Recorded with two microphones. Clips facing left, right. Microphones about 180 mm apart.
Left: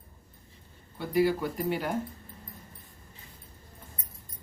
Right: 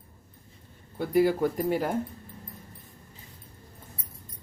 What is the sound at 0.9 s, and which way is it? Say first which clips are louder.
Speech: right 3 dB; 50° right (ahead or behind).